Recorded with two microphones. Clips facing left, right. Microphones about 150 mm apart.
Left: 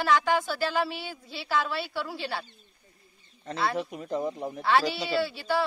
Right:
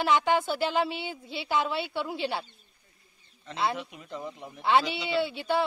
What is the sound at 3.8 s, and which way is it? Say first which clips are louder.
Speech: left 8 dB; 40° left (ahead or behind).